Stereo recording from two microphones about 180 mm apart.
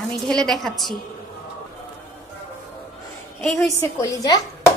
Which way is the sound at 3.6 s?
20° left (ahead or behind).